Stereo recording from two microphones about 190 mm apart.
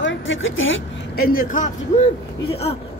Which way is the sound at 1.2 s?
50° left (ahead or behind).